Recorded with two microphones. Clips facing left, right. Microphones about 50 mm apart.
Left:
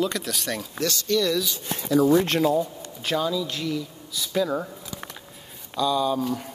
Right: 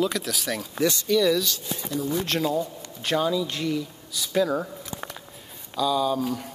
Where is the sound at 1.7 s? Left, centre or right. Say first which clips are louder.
Left 9 dB; left.